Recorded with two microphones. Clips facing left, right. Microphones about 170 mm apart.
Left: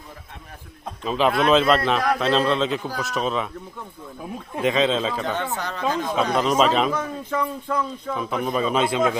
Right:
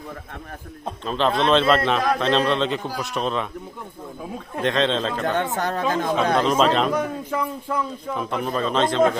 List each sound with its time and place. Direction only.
1.0 s a man's voice: 5° left (ahead or behind)
4.5 s a man's voice: 5° left (ahead or behind)
5.4 s speech: 50° right (ahead or behind)
6.3 s a man's voice: 5° left (ahead or behind)
6.9 s a man's voice: 10° right (ahead or behind); by 9.0 s 10° left (ahead or behind)